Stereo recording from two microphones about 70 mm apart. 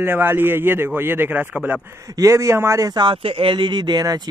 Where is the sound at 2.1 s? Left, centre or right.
Right.